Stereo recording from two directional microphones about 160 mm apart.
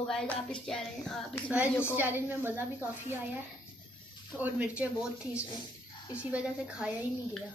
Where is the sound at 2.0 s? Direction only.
10° right (ahead or behind).